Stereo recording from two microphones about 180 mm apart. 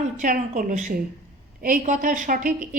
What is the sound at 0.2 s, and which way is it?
A woman's voice, 45° right (ahead or behind).